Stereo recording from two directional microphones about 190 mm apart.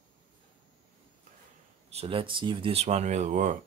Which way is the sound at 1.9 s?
30° right (ahead or behind).